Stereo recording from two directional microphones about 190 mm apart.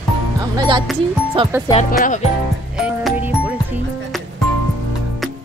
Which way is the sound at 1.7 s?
40° left (ahead or behind).